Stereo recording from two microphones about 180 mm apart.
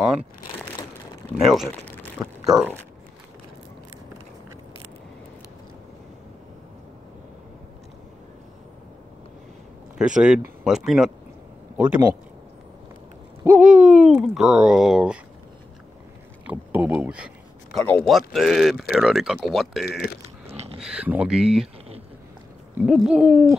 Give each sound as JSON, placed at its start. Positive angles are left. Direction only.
{"t": 1.4, "sound": "speech", "side_deg": 0}
{"t": 2.2, "sound": "speech", "side_deg": -15}
{"t": 9.9, "sound": "speech", "side_deg": -5}
{"t": 13.4, "sound": "speech", "side_deg": -10}
{"t": 16.4, "sound": "speech", "side_deg": -10}
{"t": 17.7, "sound": "speech", "side_deg": 5}
{"t": 19.9, "sound": "speech", "side_deg": 60}
{"t": 20.8, "sound": "speech", "side_deg": -5}
{"t": 22.8, "sound": "speech", "side_deg": -5}